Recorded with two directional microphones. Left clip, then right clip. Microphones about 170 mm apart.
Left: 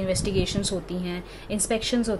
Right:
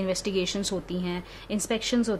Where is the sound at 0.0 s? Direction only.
35° right (ahead or behind).